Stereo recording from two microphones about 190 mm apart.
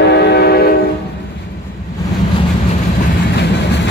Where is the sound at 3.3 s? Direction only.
65° left (ahead or behind).